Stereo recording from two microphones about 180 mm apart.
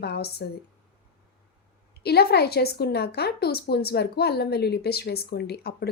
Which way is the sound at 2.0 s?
65° left (ahead or behind).